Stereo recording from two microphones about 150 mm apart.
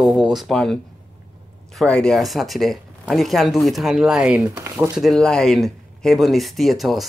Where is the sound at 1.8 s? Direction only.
5° left (ahead or behind).